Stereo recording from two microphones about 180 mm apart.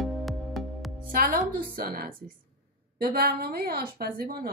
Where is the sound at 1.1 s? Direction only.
50° right (ahead or behind).